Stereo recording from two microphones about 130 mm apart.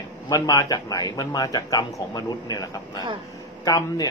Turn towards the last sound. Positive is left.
turn(degrees=30)  # may be behind; listen again after turning